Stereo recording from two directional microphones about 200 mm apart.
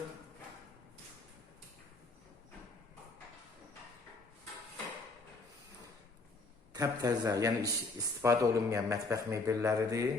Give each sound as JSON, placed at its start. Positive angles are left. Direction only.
{"t": 6.7, "sound": "a man's voice", "side_deg": -15}